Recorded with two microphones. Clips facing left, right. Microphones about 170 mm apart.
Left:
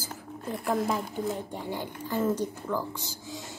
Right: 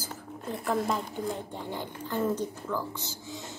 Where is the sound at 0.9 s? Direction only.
10° left (ahead or behind).